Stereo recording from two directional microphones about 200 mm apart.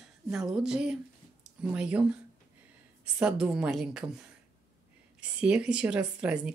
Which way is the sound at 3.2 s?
5° right (ahead or behind).